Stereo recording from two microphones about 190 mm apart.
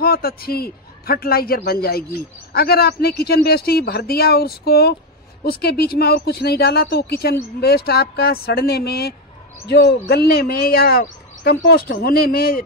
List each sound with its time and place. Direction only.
0.0 s a man's voice: 55° left (ahead or behind)